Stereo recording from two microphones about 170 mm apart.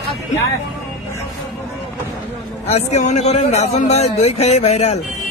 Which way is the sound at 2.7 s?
40° left (ahead or behind).